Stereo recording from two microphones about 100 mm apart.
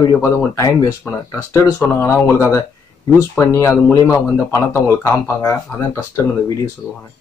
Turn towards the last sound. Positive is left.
turn(degrees=30)  # may be behind; listen again after turning